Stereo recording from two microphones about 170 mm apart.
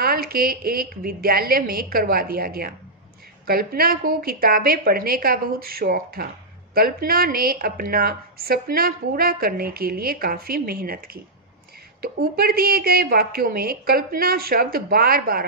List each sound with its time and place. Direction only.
0.0 s a woman's voice: 60° right (ahead or behind)
12.0 s a woman's voice: 65° right (ahead or behind)